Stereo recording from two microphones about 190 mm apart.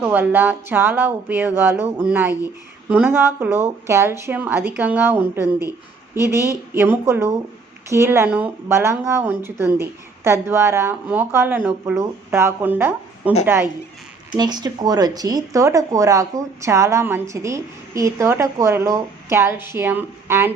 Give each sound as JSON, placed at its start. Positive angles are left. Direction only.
{"t": 0.0, "sound": "speech", "side_deg": -10}
{"t": 14.3, "sound": "speech", "side_deg": -20}